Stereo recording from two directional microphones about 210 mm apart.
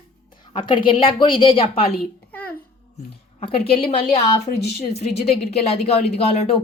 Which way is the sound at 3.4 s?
25° left (ahead or behind).